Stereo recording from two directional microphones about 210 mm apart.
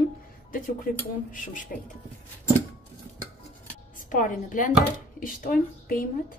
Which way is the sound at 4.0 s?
40° left (ahead or behind).